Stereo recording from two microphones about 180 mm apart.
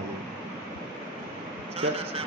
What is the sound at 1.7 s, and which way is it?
Speech, 35° right (ahead or behind).